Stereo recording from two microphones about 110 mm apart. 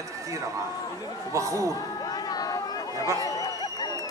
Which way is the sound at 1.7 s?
35° left (ahead or behind).